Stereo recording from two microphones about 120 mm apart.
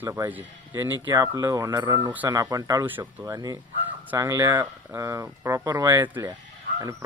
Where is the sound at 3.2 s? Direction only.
30° right (ahead or behind).